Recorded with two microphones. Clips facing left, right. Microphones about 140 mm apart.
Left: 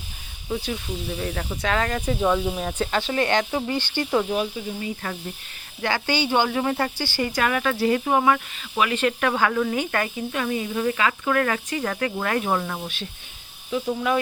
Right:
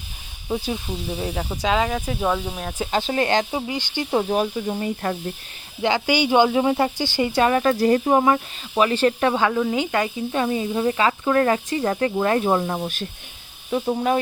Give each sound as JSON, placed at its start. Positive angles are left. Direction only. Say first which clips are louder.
{"t": 0.7, "sound": "speech", "louder": "right 2 dB", "side_deg": -20}
{"t": 1.9, "sound": "speech", "louder": "left 1 dB", "side_deg": -5}
{"t": 3.0, "sound": "speech", "louder": "right 2 dB", "side_deg": -30}
{"t": 3.5, "sound": "speech", "louder": "left 1 dB", "side_deg": -15}
{"t": 4.1, "sound": "speech", "louder": "right 2 dB", "side_deg": -40}
{"t": 4.5, "sound": "speech", "louder": "right 5 dB", "side_deg": -65}
{"t": 5.8, "sound": "speech", "louder": "right 4 dB", "side_deg": -15}
{"t": 9.3, "sound": "speech", "louder": "right 2 dB", "side_deg": -20}
{"t": 10.3, "sound": "speech", "louder": "right 4 dB", "side_deg": -30}
{"t": 13.7, "sound": "speech", "louder": "right 3 dB", "side_deg": -45}